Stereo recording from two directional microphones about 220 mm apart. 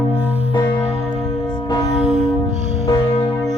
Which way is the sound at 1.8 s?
30° right (ahead or behind).